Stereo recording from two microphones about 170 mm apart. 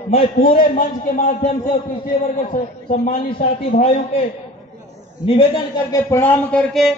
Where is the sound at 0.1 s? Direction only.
30° left (ahead or behind).